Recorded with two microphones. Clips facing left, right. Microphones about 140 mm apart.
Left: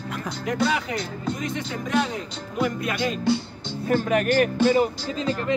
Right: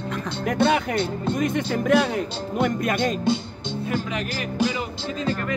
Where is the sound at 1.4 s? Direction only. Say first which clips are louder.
Right 6 dB; 60° right (ahead or behind).